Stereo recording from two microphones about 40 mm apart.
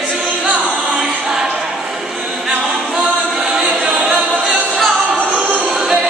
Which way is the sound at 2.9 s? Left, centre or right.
Centre.